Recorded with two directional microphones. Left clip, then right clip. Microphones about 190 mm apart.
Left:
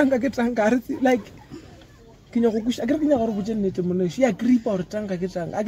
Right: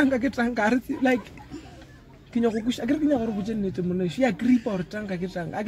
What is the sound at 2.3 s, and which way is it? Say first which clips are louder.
Speech: left 3 dB; 20° right (ahead or behind).